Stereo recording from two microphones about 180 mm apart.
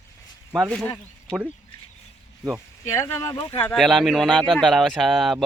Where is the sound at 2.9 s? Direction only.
15° left (ahead or behind).